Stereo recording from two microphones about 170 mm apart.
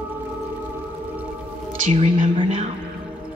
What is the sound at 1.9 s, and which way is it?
Speech, 40° right (ahead or behind).